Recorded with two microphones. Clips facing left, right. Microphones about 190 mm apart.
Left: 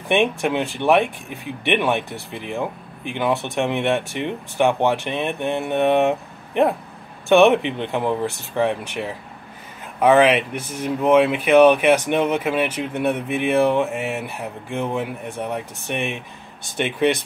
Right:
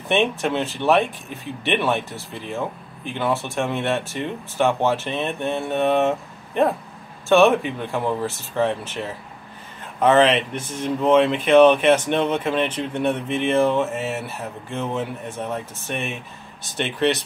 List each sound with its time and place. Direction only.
0.1 s speech: 15° left (ahead or behind)